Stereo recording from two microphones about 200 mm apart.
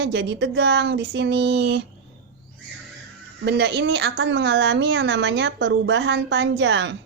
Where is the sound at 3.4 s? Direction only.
55° right (ahead or behind).